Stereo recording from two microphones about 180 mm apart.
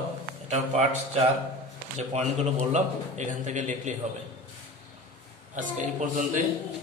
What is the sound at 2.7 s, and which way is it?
A man's voice, 40° right (ahead or behind).